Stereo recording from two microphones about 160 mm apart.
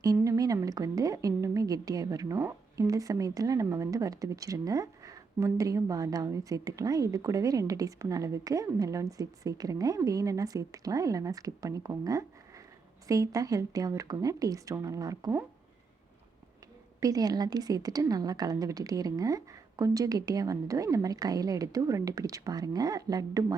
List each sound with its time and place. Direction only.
0.0 s a woman's voice: 20° right (ahead or behind)
17.0 s a woman's voice: 25° right (ahead or behind)